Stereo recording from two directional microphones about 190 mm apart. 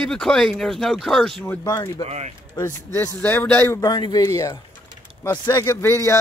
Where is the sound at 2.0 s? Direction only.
35° right (ahead or behind).